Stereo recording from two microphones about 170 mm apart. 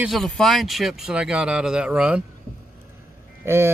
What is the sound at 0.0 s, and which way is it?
Speech, centre (ahead or behind).